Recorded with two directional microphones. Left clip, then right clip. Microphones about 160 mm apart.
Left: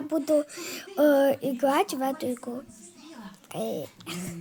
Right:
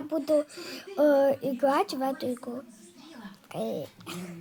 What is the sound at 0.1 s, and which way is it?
Speech, 20° left (ahead or behind).